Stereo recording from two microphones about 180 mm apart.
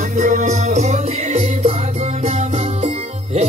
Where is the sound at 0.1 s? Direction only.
45° right (ahead or behind).